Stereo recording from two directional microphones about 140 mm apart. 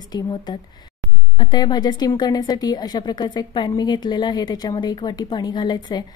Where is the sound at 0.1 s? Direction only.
30° left (ahead or behind).